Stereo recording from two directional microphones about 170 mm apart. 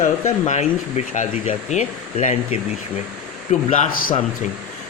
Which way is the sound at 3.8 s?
45° left (ahead or behind).